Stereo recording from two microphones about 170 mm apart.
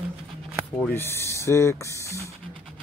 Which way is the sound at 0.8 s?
15° left (ahead or behind).